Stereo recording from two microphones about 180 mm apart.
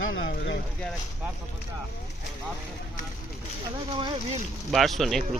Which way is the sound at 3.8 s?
25° right (ahead or behind).